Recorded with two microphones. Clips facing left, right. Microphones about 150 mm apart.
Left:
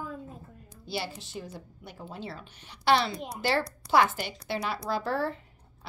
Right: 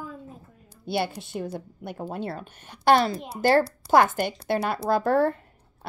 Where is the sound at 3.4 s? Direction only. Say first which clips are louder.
Right 9 dB; 45° right (ahead or behind).